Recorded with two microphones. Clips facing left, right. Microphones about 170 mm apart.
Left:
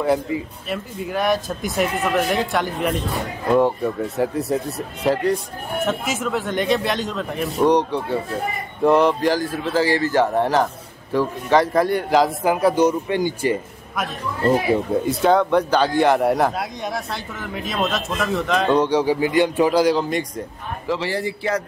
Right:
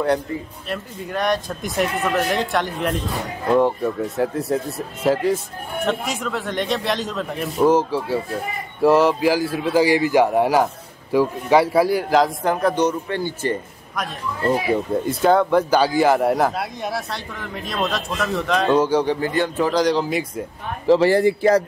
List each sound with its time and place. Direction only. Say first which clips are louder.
0.0 s a man's voice: left 1 dB; 5° left (ahead or behind)
15.0 s speech: right 1 dB; centre (ahead or behind)
19.1 s speech: left 3 dB; 15° left (ahead or behind); by 20.4 s 5° right (ahead or behind)
20.8 s speech: right 10 dB; 35° right (ahead or behind)
21.1 s speech: right 8 dB; 50° right (ahead or behind)